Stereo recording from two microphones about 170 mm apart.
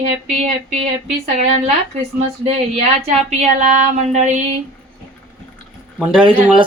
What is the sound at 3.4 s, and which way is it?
Speech, 45° right (ahead or behind).